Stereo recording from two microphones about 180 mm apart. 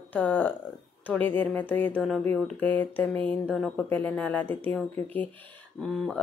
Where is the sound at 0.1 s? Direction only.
10° left (ahead or behind).